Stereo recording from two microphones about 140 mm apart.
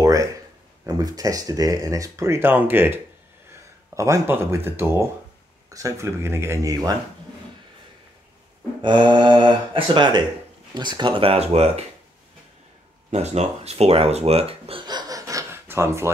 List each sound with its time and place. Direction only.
0.0 s a sound: 25° right (ahead or behind)
0.8 s speech: 25° right (ahead or behind)
8.8 s speech: 35° right (ahead or behind)
13.1 s speech: 50° right (ahead or behind)
14.9 s gasp: 30° right (ahead or behind)